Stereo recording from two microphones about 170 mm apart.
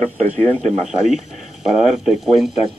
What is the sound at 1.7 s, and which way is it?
Speech, centre (ahead or behind).